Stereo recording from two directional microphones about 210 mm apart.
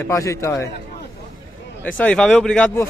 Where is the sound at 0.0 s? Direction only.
15° left (ahead or behind).